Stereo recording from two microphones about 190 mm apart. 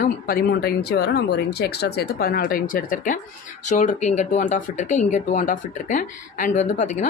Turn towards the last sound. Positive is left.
turn(degrees=40)  # may be behind; listen again after turning